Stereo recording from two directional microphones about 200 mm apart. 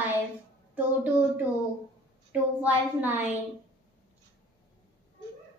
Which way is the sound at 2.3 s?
5° right (ahead or behind).